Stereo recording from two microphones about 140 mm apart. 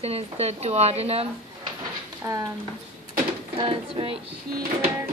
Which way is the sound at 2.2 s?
25° right (ahead or behind).